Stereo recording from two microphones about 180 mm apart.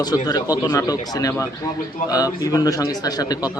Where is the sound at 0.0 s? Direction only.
20° left (ahead or behind).